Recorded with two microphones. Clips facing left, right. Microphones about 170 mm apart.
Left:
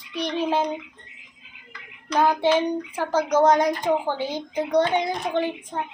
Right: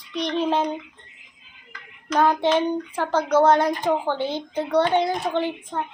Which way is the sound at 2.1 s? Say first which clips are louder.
Even; 10° left (ahead or behind).